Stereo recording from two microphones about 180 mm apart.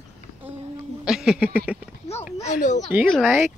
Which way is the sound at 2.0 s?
35° left (ahead or behind).